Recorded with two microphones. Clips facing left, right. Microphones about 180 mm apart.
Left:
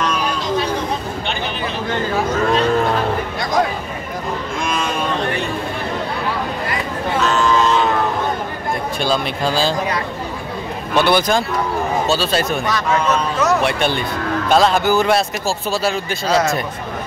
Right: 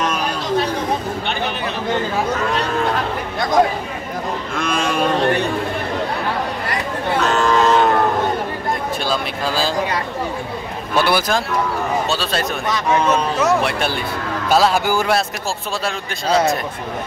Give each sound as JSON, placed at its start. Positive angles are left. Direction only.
{"t": 4.6, "sound": "vehicle", "side_deg": -60}
{"t": 7.2, "sound": "a sound", "side_deg": -50}
{"t": 9.0, "sound": "speech", "side_deg": 0}
{"t": 11.0, "sound": "speech", "side_deg": -5}